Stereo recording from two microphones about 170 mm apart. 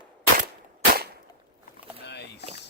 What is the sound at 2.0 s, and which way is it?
Rowboat, 85° left.